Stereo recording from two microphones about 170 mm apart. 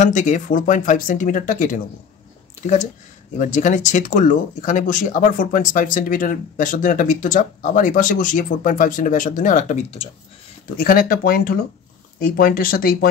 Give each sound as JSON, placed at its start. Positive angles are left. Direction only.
{"t": 0.0, "sound": "speech", "side_deg": 45}
{"t": 10.8, "sound": "speech", "side_deg": 60}